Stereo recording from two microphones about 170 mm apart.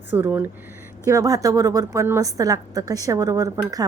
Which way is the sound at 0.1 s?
10° right (ahead or behind).